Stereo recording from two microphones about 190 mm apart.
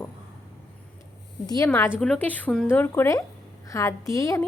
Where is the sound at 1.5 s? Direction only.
15° left (ahead or behind).